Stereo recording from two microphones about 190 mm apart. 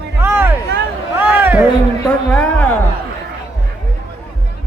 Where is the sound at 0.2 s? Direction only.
10° right (ahead or behind).